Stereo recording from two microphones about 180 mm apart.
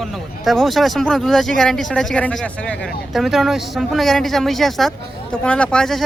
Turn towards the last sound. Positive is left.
turn(degrees=0)  # may be behind; listen again after turning